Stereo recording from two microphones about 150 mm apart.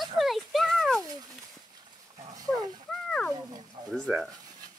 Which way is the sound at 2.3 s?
25° right (ahead or behind).